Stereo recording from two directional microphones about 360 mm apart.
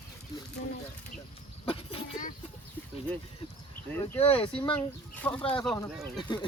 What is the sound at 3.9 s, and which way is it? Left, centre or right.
Speech, centre.